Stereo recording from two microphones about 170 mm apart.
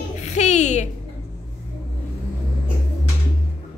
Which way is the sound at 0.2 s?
40° left (ahead or behind).